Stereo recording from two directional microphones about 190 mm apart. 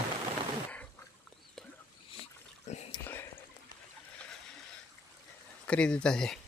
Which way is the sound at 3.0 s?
10° left (ahead or behind).